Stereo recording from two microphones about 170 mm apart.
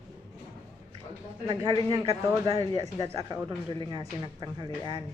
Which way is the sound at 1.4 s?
25° right (ahead or behind).